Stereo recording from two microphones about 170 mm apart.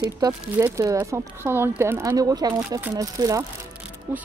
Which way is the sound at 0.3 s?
15° right (ahead or behind).